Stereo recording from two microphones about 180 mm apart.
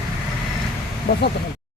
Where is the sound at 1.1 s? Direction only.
60° left (ahead or behind).